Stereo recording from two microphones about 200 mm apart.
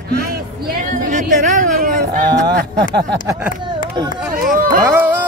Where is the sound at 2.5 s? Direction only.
55° right (ahead or behind).